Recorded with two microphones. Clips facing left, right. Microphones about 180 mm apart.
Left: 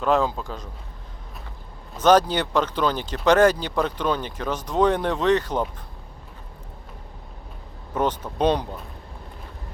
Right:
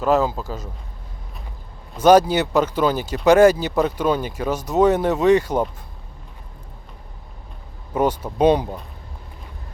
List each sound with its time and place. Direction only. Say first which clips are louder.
0.0 s speech: right 3 dB; 5° right (ahead or behind)
2.0 s speech: right 4 dB; 10° right (ahead or behind)
7.9 s speech: right 4 dB; 10° right (ahead or behind)